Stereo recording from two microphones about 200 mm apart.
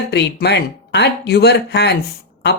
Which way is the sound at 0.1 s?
60° left (ahead or behind).